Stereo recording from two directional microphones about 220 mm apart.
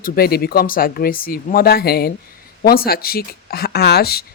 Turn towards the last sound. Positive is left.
turn(degrees=45)  # may be behind; listen again after turning